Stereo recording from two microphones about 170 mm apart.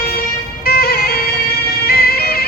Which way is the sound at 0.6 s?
65° left (ahead or behind).